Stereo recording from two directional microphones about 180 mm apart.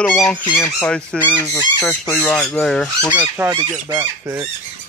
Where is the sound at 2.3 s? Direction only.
5° left (ahead or behind).